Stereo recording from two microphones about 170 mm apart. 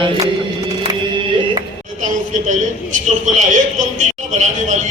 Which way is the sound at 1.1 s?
30° right (ahead or behind).